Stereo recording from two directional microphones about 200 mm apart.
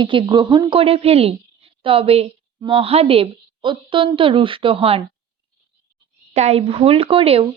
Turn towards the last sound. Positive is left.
turn(degrees=-30)  # may be behind; listen again after turning